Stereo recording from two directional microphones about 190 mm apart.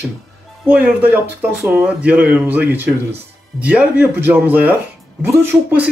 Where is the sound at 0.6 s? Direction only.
5° right (ahead or behind).